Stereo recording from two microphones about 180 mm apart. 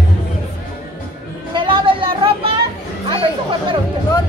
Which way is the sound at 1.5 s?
25° right (ahead or behind).